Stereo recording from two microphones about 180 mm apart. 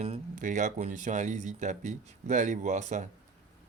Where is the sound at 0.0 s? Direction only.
40° right (ahead or behind).